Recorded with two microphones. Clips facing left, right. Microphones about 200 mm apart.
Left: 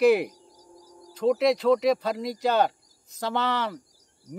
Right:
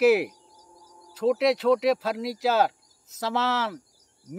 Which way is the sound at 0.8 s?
35° left (ahead or behind).